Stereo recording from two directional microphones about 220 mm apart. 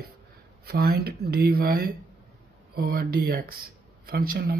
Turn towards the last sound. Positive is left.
turn(degrees=-40)  # may be behind; listen again after turning